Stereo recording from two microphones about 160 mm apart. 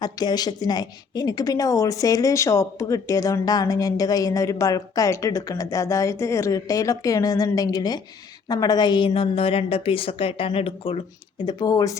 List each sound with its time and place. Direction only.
0.0 s a woman's voice: 25° left (ahead or behind)